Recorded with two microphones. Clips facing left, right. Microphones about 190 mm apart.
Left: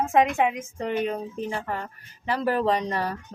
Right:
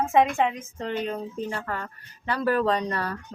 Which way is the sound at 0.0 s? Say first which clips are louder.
Even; centre (ahead or behind).